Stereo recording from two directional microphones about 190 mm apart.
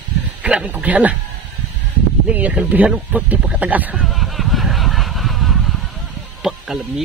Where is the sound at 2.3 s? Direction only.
5° right (ahead or behind).